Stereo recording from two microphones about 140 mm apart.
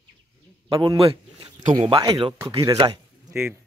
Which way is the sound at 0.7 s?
40° right (ahead or behind).